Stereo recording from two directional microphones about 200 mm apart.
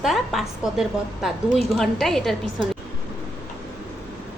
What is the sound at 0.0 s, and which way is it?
A woman's voice, centre (ahead or behind).